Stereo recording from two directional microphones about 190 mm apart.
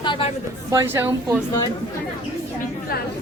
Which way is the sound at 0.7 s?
15° right (ahead or behind).